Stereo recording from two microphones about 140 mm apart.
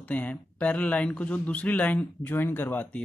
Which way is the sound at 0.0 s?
10° left (ahead or behind).